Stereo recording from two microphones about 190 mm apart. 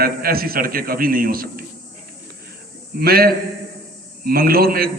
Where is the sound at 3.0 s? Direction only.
55° right (ahead or behind).